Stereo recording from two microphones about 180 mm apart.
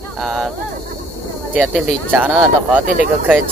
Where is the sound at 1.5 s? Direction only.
Centre (ahead or behind).